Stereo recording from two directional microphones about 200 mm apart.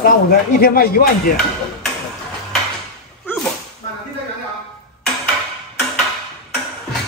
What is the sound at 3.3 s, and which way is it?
Whip, 10° left (ahead or behind).